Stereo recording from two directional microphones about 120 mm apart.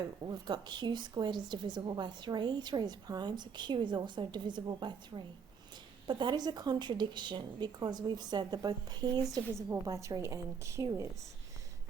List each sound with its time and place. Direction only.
0.0 s a woman's voice: 35° right (ahead or behind)